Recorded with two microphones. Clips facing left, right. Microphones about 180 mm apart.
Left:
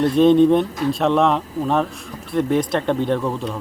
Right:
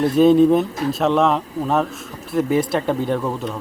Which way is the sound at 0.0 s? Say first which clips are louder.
Even; 5° right (ahead or behind).